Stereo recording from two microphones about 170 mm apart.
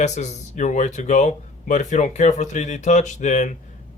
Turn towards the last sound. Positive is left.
turn(degrees=45)  # may be behind; listen again after turning